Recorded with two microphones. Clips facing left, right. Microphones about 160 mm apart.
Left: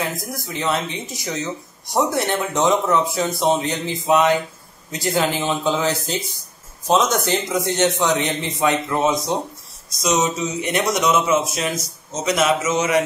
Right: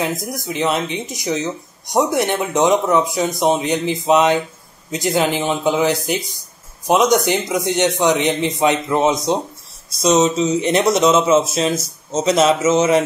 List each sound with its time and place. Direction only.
0.0 s speech: 20° right (ahead or behind)